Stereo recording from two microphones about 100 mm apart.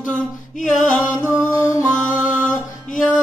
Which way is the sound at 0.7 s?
5° left (ahead or behind).